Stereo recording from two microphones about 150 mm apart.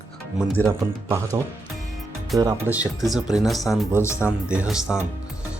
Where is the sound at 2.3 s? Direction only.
20° right (ahead or behind).